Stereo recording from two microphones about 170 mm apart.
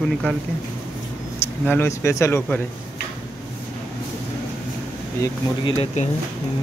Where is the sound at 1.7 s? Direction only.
15° left (ahead or behind).